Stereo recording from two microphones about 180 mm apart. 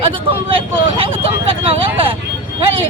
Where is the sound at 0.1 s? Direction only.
30° right (ahead or behind).